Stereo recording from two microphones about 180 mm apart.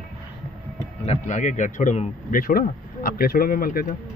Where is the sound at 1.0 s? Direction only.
40° left (ahead or behind).